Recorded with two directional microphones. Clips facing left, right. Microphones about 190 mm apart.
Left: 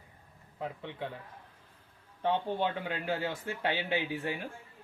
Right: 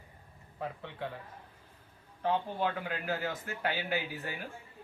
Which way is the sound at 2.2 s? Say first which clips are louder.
Left 1 dB; 25° left (ahead or behind).